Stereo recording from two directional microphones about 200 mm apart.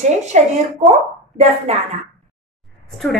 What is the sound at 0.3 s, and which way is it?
Speech, 35° right (ahead or behind).